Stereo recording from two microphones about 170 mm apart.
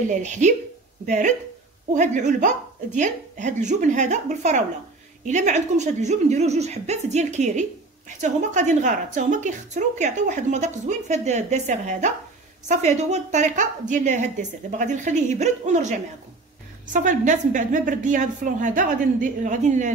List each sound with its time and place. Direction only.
0.1 s a woman's voice: 45° right (ahead or behind)